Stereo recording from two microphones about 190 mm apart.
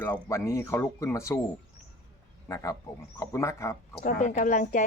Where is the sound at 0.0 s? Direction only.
15° left (ahead or behind).